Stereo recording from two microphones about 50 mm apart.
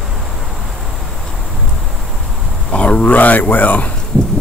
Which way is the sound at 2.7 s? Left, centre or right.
Left.